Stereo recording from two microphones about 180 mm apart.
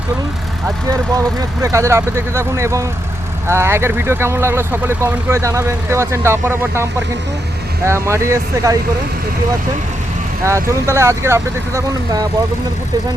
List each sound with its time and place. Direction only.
0.9 s speech: 20° right (ahead or behind)
7.9 s speech: 15° right (ahead or behind)
10.4 s speech: 15° right (ahead or behind)